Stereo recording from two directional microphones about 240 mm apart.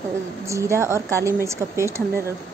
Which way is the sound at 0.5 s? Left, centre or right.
Centre.